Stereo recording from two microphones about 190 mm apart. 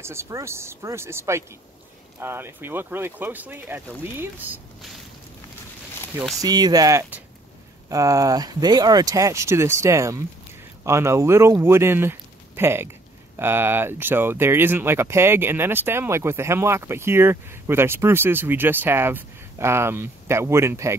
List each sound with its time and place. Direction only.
0.0 s speech: 15° right (ahead or behind)
6.4 s speech: 20° right (ahead or behind)